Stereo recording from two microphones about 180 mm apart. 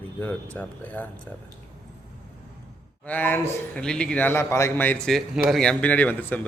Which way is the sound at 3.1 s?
10° left (ahead or behind).